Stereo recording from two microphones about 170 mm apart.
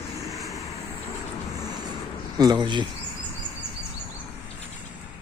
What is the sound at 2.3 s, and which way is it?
Speech, 25° right (ahead or behind).